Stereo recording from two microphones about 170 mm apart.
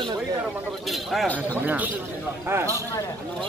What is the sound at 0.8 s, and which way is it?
Speech, 5° left (ahead or behind).